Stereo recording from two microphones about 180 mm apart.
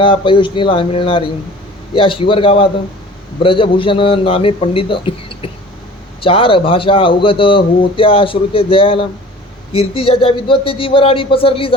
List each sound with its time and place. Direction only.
0.0 s a man's voice: 30° left (ahead or behind)